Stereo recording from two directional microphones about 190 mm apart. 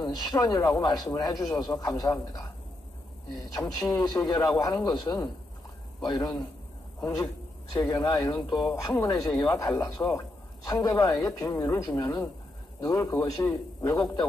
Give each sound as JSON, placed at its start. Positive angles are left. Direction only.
{"t": 0.0, "sound": "speech", "side_deg": 20}
{"t": 3.5, "sound": "a man's voice", "side_deg": 20}